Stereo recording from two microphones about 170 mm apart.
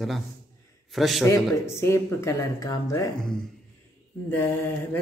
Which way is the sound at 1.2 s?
15° left (ahead or behind).